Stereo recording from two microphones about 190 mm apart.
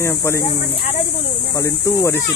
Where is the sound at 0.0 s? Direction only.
15° left (ahead or behind).